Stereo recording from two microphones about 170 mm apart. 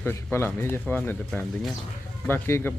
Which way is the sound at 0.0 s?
15° left (ahead or behind).